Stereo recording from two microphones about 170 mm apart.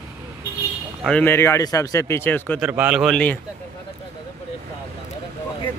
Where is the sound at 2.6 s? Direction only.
5° right (ahead or behind).